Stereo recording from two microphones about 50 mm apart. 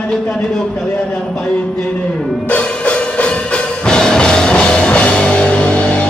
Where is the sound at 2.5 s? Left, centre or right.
Left.